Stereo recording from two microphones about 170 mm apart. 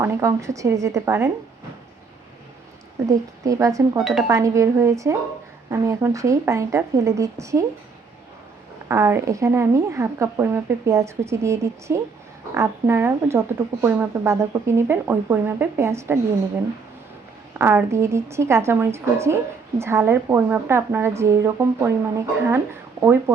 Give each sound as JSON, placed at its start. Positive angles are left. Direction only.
{"t": 0.0, "sound": "a woman's voice", "side_deg": -15}
{"t": 3.1, "sound": "a woman's voice", "side_deg": -20}
{"t": 3.9, "sound": "speech", "side_deg": 0}
{"t": 4.3, "sound": "a woman's voice", "side_deg": -20}
{"t": 8.9, "sound": "a woman's voice", "side_deg": -15}
{"t": 17.6, "sound": "a woman's voice", "side_deg": -15}